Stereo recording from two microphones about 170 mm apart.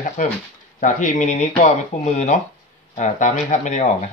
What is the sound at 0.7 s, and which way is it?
Speech, 45° left (ahead or behind).